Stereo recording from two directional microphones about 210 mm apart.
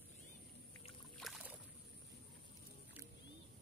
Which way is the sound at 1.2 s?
5° right (ahead or behind).